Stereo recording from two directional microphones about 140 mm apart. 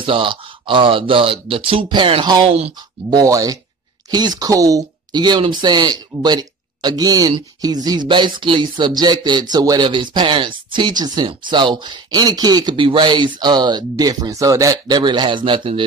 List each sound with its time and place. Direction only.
0.0 s speech: 35° right (ahead or behind)
3.1 s speech: 25° right (ahead or behind)